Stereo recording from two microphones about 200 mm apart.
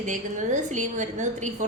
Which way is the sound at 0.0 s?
40° right (ahead or behind).